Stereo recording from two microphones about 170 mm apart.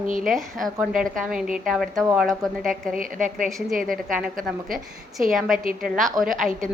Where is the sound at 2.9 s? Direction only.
50° right (ahead or behind).